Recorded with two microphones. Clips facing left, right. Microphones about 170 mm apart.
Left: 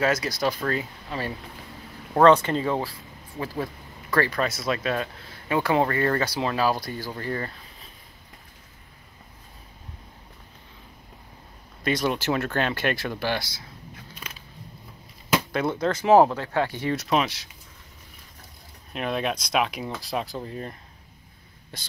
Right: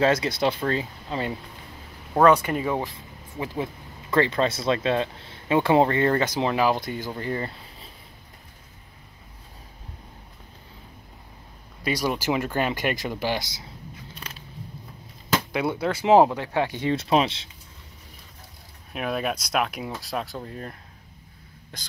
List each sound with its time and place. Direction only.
0.0 s speech: 25° right (ahead or behind)
2.1 s speech: 10° right (ahead or behind)
11.8 s speech: 10° right (ahead or behind)
15.5 s speech: 10° right (ahead or behind); by 17.5 s 25° right (ahead or behind)
18.9 s speech: 5° right (ahead or behind)
21.7 s speech: centre (ahead or behind)